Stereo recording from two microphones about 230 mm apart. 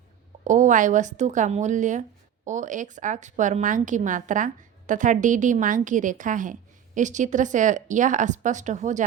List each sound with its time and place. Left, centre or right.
0.4 s a woman's voice: right